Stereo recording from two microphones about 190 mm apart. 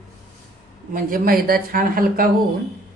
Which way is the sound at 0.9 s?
50° right (ahead or behind).